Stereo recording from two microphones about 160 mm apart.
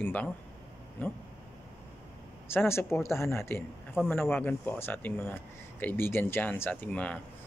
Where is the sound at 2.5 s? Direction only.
15° left (ahead or behind).